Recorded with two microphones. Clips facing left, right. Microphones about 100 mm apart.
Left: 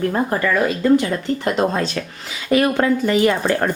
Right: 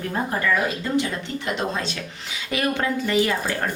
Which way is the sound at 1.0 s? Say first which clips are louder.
Left 6 dB; 45° left (ahead or behind).